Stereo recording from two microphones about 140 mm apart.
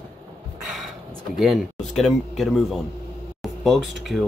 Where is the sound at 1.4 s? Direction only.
Centre (ahead or behind).